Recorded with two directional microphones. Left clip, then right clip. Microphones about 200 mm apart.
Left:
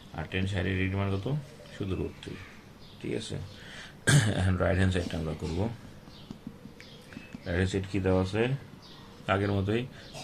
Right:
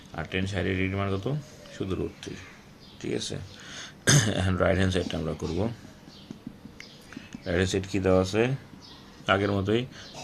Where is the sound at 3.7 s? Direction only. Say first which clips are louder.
Right 3 dB; 25° right (ahead or behind).